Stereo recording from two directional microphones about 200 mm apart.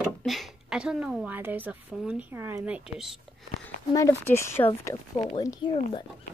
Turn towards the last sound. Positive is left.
turn(degrees=30)  # may be behind; listen again after turning